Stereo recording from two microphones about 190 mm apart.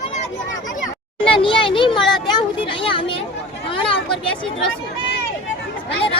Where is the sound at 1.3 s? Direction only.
25° left (ahead or behind).